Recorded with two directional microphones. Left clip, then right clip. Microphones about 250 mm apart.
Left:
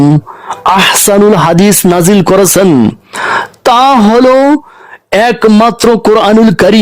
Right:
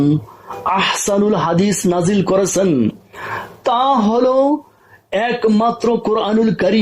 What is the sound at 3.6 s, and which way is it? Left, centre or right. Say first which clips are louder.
Speech: left 9 dB; left.